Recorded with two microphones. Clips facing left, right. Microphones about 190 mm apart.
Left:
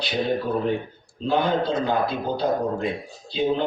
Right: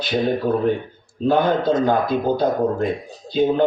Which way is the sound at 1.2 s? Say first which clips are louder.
Right 5 dB; 50° right (ahead or behind).